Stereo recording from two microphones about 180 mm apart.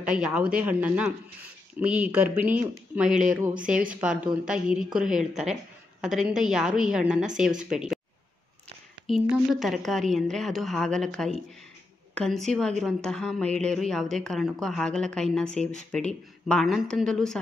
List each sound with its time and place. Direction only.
0.0 s a woman's voice: 5° right (ahead or behind)
9.0 s a woman's voice: 5° right (ahead or behind)